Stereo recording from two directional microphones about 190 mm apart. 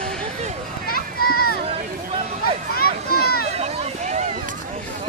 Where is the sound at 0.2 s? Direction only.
35° right (ahead or behind).